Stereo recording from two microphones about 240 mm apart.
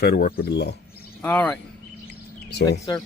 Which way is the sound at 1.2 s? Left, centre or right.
Centre.